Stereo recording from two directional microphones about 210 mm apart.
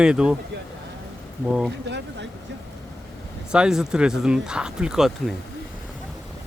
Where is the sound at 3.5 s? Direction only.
5° right (ahead or behind).